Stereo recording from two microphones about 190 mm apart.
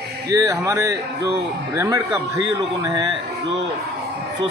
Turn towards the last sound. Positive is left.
turn(degrees=-20)  # may be behind; listen again after turning